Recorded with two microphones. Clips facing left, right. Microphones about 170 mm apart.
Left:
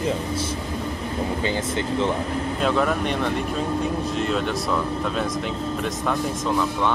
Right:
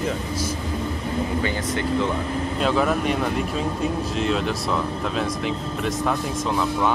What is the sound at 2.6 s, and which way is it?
Speech, centre (ahead or behind).